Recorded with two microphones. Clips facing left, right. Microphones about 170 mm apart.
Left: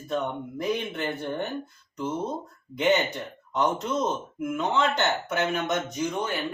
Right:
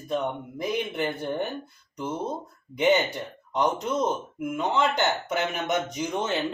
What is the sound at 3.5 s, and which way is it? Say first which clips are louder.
Speech: even; 10° right (ahead or behind).